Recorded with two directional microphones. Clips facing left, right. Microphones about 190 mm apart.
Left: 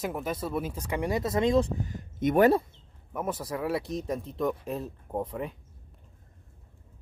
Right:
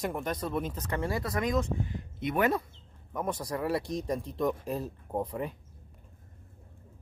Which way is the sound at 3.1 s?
5° left (ahead or behind).